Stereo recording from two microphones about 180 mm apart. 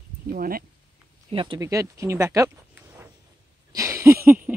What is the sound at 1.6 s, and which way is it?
Speech, 15° right (ahead or behind).